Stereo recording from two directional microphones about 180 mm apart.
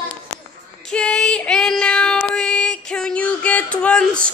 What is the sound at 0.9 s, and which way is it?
Child singing, 5° left (ahead or behind).